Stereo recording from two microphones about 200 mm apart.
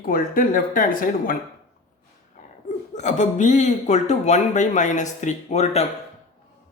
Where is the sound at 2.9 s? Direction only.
35° left (ahead or behind).